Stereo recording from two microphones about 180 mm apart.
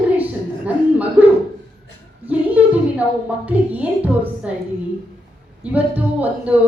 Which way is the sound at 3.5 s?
10° right (ahead or behind).